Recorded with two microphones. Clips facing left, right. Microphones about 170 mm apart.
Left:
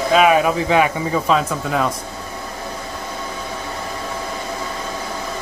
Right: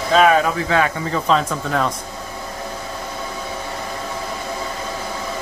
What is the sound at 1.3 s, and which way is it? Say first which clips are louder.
Speech: right 2 dB; 5° left (ahead or behind).